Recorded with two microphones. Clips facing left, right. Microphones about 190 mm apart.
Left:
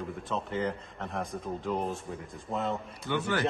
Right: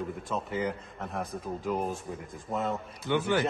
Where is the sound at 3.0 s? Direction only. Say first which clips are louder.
Right 4 dB; 15° right (ahead or behind).